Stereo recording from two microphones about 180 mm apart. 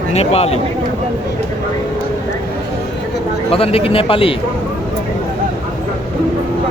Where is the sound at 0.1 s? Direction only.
35° left (ahead or behind).